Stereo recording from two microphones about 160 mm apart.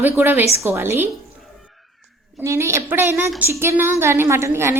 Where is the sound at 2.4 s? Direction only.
15° right (ahead or behind).